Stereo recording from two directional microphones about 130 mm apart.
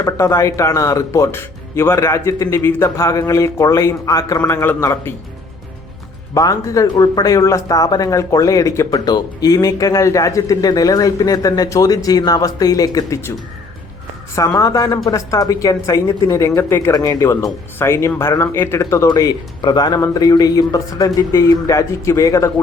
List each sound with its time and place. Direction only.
0.0 s speech: 20° left (ahead or behind)
6.3 s speech: 25° left (ahead or behind)
14.3 s speech: 25° left (ahead or behind)